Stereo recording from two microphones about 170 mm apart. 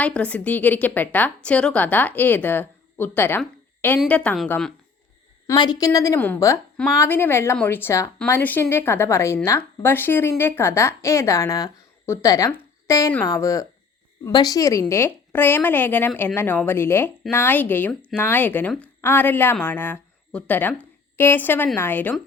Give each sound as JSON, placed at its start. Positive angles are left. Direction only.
{"t": 0.0, "sound": "speech", "side_deg": 5}
{"t": 5.5, "sound": "a woman's voice", "side_deg": 20}